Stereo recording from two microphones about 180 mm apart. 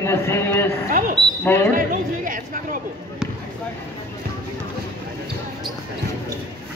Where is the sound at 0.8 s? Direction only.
50° right (ahead or behind).